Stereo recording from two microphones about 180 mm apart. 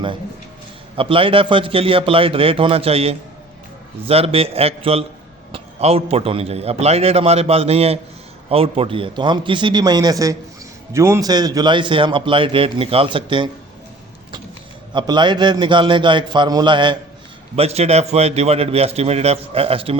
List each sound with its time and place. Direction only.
0.9 s a man's voice: 30° right (ahead or behind)
14.9 s a man's voice: 25° right (ahead or behind)
17.6 s a man's voice: 35° right (ahead or behind)